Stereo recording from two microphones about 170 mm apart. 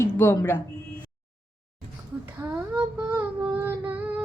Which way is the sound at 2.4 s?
15° right (ahead or behind).